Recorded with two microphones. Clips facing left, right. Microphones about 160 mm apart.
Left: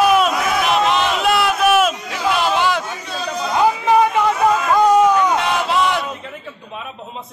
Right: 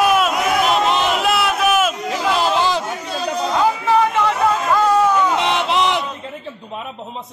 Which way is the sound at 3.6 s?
15° left (ahead or behind).